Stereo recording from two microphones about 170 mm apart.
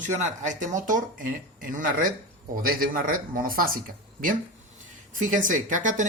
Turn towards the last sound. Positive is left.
turn(degrees=-50)  # may be behind; listen again after turning